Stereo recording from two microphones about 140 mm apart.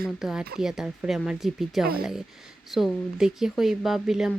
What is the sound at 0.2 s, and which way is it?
Speech, 5° right (ahead or behind).